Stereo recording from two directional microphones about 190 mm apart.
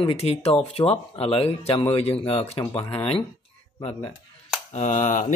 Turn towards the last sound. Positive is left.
turn(degrees=40)  # may be behind; listen again after turning